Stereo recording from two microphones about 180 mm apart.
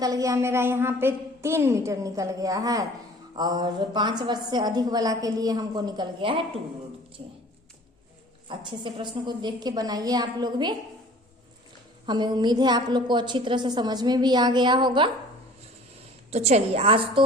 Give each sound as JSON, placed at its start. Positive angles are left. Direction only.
{"t": 0.0, "sound": "a woman's voice", "side_deg": -20}
{"t": 8.4, "sound": "a woman's voice", "side_deg": -25}
{"t": 12.0, "sound": "a woman's voice", "side_deg": -25}
{"t": 16.3, "sound": "a woman's voice", "side_deg": -35}